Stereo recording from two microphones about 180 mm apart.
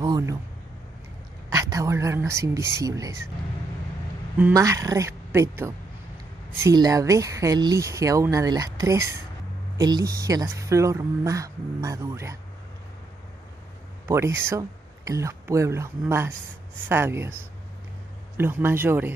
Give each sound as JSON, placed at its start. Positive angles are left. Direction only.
{"t": 0.0, "sound": "speech", "side_deg": -20}
{"t": 1.5, "sound": "speech", "side_deg": -20}
{"t": 4.4, "sound": "speech", "side_deg": -15}
{"t": 14.0, "sound": "speech", "side_deg": -15}
{"t": 18.4, "sound": "speech", "side_deg": -10}